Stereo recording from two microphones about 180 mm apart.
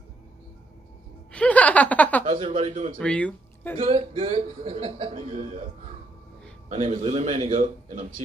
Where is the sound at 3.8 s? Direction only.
30° right (ahead or behind).